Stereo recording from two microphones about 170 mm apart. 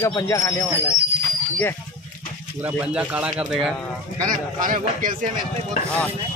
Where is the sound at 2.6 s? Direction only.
10° right (ahead or behind).